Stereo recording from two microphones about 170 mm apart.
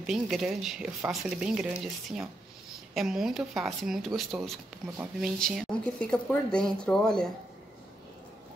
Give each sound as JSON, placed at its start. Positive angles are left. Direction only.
{"t": 0.0, "sound": "speech", "side_deg": 0}